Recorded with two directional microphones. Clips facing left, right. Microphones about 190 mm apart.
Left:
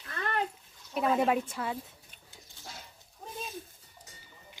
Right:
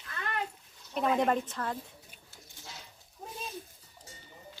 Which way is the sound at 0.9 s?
5° left (ahead or behind).